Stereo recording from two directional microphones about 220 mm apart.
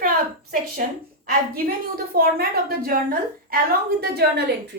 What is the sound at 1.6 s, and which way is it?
A woman's voice, 45° right (ahead or behind).